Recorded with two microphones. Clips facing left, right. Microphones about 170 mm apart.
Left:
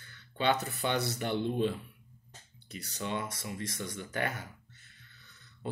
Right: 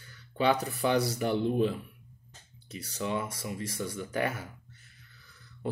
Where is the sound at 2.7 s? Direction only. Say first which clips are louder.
Right 4 dB; 30° right (ahead or behind).